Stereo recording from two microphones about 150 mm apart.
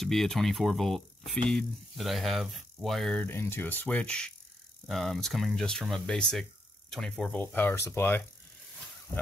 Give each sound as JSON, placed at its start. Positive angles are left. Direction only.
{"t": 0.0, "sound": "speech", "side_deg": 0}
{"t": 3.3, "sound": "speech", "side_deg": 15}